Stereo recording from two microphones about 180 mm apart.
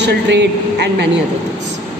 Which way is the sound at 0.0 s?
70° right (ahead or behind).